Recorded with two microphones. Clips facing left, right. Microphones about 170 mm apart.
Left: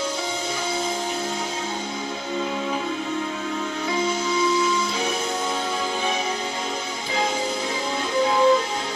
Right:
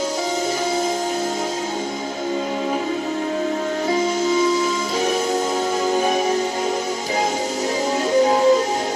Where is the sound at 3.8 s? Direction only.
40° right (ahead or behind).